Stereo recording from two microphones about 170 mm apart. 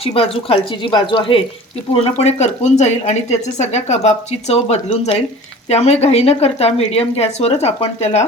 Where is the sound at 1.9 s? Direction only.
40° left (ahead or behind).